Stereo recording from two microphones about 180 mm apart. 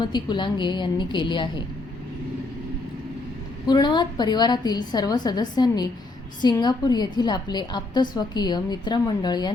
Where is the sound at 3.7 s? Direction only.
25° left (ahead or behind).